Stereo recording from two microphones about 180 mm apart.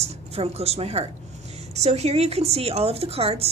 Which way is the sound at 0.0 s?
35° right (ahead or behind).